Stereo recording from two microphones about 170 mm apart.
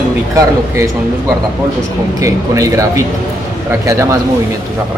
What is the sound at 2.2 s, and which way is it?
Speech, 20° right (ahead or behind).